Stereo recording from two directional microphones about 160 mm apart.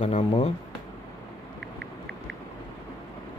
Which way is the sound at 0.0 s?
35° left (ahead or behind).